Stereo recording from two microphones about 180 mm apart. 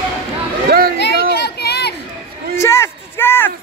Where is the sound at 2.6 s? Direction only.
15° left (ahead or behind).